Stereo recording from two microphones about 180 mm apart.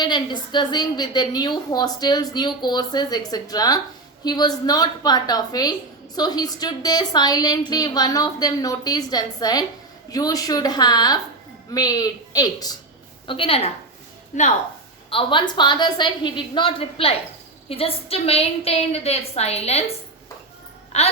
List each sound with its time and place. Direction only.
0.0 s a woman's voice: 25° left (ahead or behind)
14.3 s a woman's voice: 45° left (ahead or behind)
15.1 s a woman's voice: 30° left (ahead or behind)
20.9 s a woman's voice: 35° left (ahead or behind)